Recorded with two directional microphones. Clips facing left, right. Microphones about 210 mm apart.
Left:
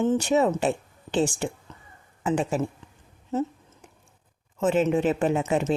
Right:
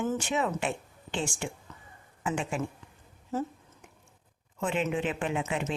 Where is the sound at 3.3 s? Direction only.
25° left (ahead or behind).